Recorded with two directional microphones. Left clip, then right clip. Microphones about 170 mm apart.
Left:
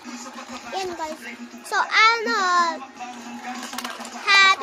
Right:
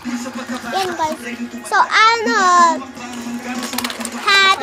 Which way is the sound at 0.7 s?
Centre (ahead or behind).